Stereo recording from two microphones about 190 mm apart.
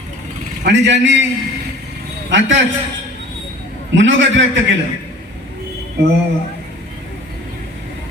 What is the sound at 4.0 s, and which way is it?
Speech, 75° right (ahead or behind).